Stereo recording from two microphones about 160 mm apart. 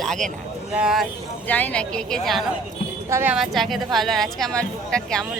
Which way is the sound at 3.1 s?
15° right (ahead or behind).